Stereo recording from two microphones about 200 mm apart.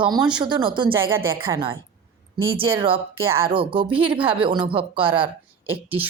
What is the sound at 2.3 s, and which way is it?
Speech, 25° right (ahead or behind).